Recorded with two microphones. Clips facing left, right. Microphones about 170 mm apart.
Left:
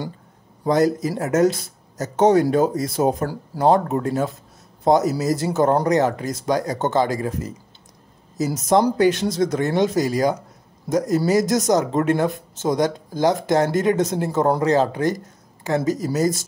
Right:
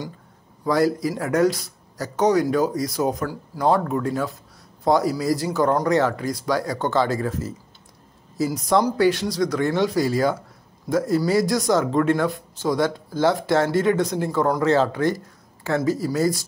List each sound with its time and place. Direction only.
0.7 s speech: 20° left (ahead or behind)